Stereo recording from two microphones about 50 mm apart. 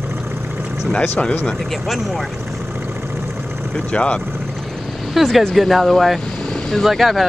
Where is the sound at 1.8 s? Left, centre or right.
Centre.